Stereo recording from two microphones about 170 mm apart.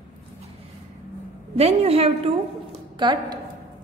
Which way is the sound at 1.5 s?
35° right (ahead or behind).